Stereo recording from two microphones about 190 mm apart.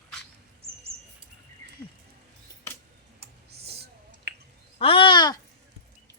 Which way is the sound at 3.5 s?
55° right (ahead or behind).